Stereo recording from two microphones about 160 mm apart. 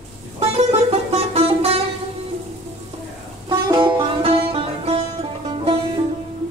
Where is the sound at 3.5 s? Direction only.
25° right (ahead or behind).